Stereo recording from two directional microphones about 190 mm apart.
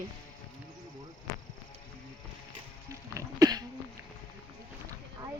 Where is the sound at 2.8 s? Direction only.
15° right (ahead or behind).